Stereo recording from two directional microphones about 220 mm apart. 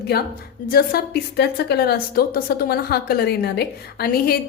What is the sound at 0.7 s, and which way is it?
A woman's voice, 45° left (ahead or behind).